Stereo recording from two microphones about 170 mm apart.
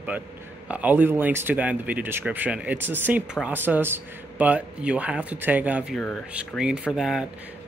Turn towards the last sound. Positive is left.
turn(degrees=-5)  # may be behind; listen again after turning